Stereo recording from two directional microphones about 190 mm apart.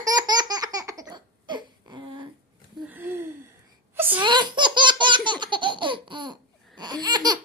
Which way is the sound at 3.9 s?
10° right (ahead or behind).